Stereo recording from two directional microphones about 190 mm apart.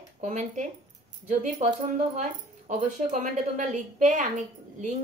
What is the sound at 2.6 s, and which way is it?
Speech, 40° right (ahead or behind).